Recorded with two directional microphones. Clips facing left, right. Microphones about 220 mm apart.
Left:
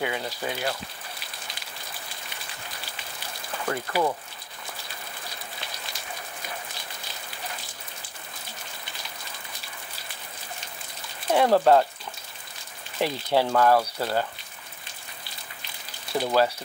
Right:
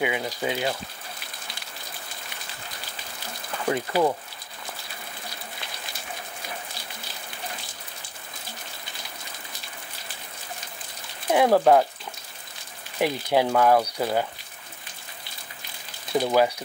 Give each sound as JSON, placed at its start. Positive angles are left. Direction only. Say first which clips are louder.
{"t": 0.0, "sound": "speech", "louder": "right 3 dB", "side_deg": -15}
{"t": 3.6, "sound": "speech", "louder": "right 3 dB", "side_deg": -15}
{"t": 11.2, "sound": "speech", "louder": "right 1 dB", "side_deg": -10}
{"t": 13.0, "sound": "speech", "louder": "right 2 dB", "side_deg": -15}
{"t": 16.1, "sound": "speech", "louder": "right 3 dB", "side_deg": -15}